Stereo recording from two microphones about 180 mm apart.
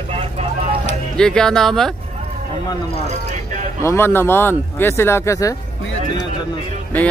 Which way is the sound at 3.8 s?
15° left (ahead or behind).